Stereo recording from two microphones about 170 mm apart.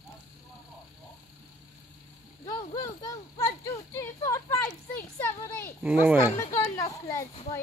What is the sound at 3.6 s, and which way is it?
Speech, 15° left (ahead or behind).